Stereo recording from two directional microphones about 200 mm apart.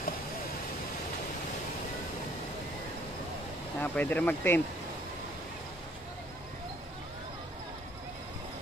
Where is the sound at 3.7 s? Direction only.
10° left (ahead or behind).